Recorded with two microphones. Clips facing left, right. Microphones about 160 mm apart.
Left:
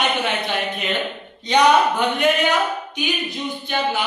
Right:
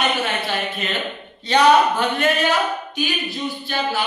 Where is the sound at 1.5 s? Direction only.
15° left (ahead or behind).